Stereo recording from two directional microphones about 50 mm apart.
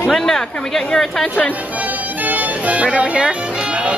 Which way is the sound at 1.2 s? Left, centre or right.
Left.